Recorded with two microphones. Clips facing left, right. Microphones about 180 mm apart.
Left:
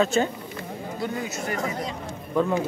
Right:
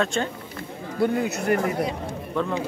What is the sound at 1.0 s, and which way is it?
Speech, 60° right (ahead or behind).